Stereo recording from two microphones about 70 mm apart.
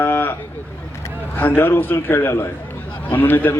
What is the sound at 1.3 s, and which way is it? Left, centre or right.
A man's voice, left.